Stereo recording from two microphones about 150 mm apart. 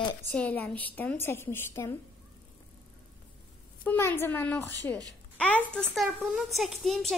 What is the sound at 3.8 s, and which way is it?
A woman's voice, 15° left (ahead or behind).